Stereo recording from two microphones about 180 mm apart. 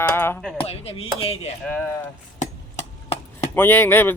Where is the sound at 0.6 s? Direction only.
35° left (ahead or behind).